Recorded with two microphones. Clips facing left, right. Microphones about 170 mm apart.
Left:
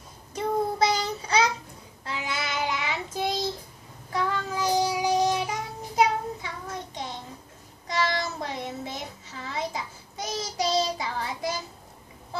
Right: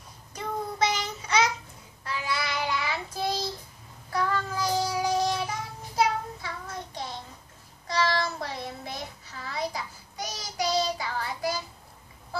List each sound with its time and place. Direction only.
0.3 s child singing: 30° left (ahead or behind); by 6.5 s 15° left (ahead or behind)
7.9 s child singing: 20° left (ahead or behind)